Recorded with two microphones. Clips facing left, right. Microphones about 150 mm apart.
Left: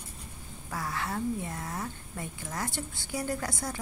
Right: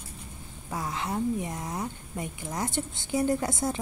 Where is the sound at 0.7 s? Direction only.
20° right (ahead or behind).